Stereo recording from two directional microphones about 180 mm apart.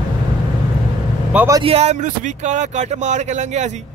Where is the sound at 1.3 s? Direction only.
15° right (ahead or behind).